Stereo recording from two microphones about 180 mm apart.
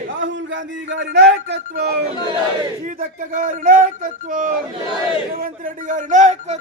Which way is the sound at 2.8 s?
45° right (ahead or behind).